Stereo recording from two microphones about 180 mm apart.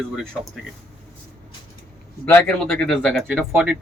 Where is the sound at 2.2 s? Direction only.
10° left (ahead or behind).